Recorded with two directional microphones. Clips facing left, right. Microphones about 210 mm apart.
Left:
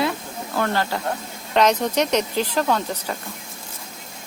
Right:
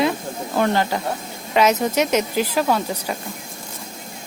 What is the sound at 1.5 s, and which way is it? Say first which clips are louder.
Speech: right 1 dB; 5° right (ahead or behind).